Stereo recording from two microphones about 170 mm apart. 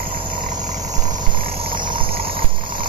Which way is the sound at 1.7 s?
30° right (ahead or behind).